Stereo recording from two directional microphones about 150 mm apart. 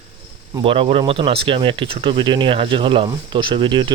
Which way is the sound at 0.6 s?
35° right (ahead or behind).